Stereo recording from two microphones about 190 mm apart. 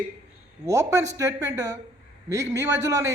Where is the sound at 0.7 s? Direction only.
15° right (ahead or behind).